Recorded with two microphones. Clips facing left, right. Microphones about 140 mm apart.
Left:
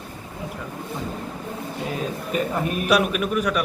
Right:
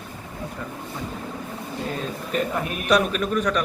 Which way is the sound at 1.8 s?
5° left (ahead or behind).